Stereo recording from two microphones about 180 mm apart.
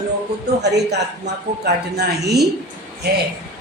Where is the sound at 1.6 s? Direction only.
65° right (ahead or behind).